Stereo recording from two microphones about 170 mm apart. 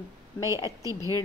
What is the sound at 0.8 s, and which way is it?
Speech, 20° right (ahead or behind).